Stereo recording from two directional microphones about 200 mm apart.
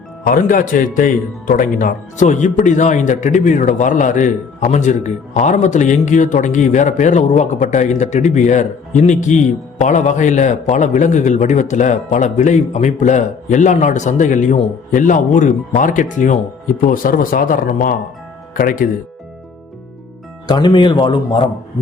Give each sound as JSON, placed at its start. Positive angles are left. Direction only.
{"t": 0.3, "sound": "speech", "side_deg": 45}
{"t": 20.5, "sound": "a man's voice", "side_deg": 20}